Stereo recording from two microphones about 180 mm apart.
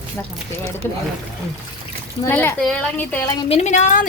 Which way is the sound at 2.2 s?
10° left (ahead or behind).